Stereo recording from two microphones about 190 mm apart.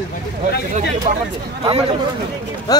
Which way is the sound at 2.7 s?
20° left (ahead or behind).